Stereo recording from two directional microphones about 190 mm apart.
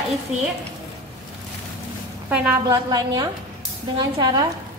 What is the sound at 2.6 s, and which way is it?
A woman's voice, 20° right (ahead or behind).